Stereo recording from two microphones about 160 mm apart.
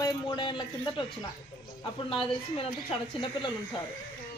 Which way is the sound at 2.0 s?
35° left (ahead or behind).